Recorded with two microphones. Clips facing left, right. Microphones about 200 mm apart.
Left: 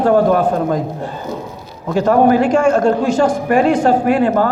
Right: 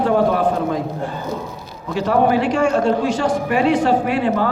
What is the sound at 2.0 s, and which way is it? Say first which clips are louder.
A man's voice: left 5 dB; 45° left (ahead or behind).